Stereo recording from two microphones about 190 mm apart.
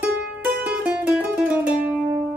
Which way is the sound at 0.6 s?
5° right (ahead or behind).